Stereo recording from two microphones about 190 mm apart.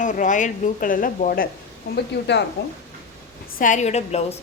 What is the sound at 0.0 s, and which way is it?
A woman's voice, 40° left (ahead or behind).